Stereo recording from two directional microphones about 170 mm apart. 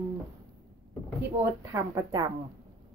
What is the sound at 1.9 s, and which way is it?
Speech, 25° right (ahead or behind).